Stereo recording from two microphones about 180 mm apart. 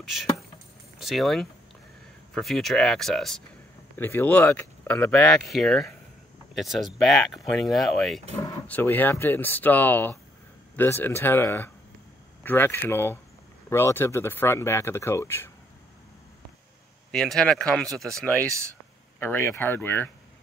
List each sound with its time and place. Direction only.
0.9 s speech: centre (ahead or behind)
8.4 s speech: 10° left (ahead or behind)
17.1 s speech: centre (ahead or behind)
18.5 s speech: 15° right (ahead or behind)
19.1 s speech: 10° left (ahead or behind)